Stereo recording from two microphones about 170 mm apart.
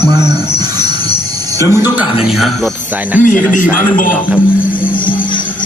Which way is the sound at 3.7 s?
55° left (ahead or behind).